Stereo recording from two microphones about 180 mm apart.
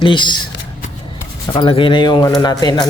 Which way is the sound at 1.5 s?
30° left (ahead or behind).